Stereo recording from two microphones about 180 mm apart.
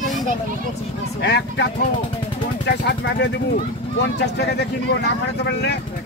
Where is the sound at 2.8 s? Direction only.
75° left (ahead or behind).